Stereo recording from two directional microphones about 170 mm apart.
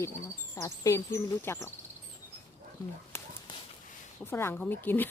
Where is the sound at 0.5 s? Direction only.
20° left (ahead or behind).